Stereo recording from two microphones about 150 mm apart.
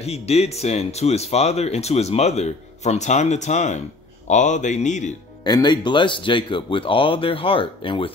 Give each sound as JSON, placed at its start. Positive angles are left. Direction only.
{"t": 0.0, "sound": "speech", "side_deg": 45}
{"t": 5.4, "sound": "speech", "side_deg": 30}